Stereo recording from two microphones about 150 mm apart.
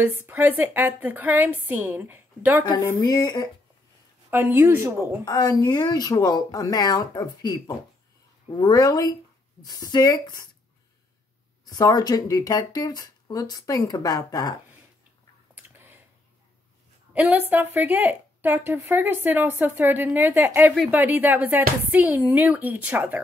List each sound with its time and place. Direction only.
0.0 s a woman's voice: 10° right (ahead or behind)
2.6 s speech: 25° left (ahead or behind)
4.3 s a woman's voice: 15° right (ahead or behind)
5.2 s speech: 25° left (ahead or behind)
11.6 s speech: 25° left (ahead or behind)
15.5 s a sound: 15° right (ahead or behind)
17.1 s a woman's voice: 10° right (ahead or behind)